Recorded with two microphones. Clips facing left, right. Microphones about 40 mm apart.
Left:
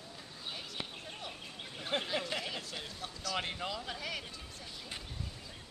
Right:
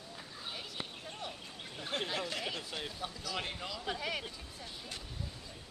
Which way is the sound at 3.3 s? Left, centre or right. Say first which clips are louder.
Left 5 dB; centre.